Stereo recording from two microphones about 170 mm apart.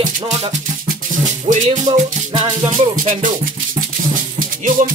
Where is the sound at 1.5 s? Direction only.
45° right (ahead or behind).